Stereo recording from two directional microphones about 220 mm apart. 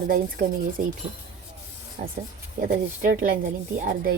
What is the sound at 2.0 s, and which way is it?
Speech, 35° right (ahead or behind).